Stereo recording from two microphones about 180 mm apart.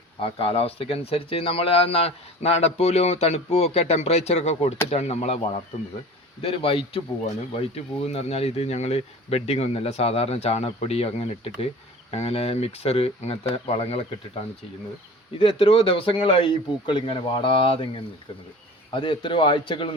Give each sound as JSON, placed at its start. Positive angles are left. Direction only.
{"t": 0.2, "sound": "speech", "side_deg": 30}
{"t": 15.4, "sound": "a man's voice", "side_deg": 30}